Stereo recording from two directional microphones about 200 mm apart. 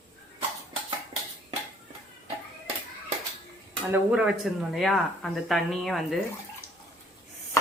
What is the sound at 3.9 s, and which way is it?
Speech, 5° right (ahead or behind).